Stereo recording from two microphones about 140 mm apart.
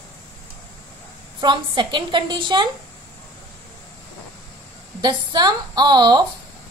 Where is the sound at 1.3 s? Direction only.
35° right (ahead or behind).